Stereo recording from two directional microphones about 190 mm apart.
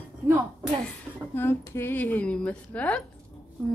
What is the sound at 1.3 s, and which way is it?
A woman's voice, 10° left (ahead or behind).